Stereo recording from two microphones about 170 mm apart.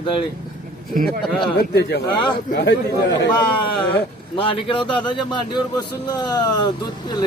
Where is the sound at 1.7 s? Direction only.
75° left (ahead or behind).